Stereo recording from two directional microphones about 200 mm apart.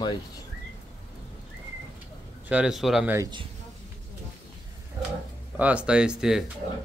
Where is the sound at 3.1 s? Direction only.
20° right (ahead or behind).